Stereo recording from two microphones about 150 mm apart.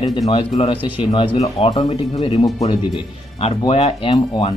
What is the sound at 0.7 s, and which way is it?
Speech, 10° right (ahead or behind).